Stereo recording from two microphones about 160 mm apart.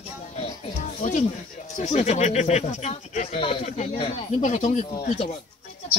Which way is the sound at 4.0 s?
35° left (ahead or behind).